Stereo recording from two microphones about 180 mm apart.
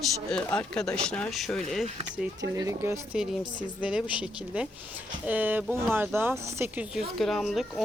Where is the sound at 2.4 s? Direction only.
20° right (ahead or behind).